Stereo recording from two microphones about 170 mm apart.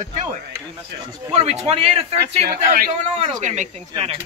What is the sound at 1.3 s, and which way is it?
Speech, 40° right (ahead or behind).